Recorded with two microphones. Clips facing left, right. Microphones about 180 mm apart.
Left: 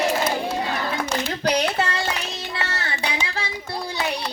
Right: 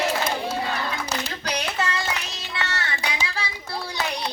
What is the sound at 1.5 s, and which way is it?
Child singing, 35° left (ahead or behind).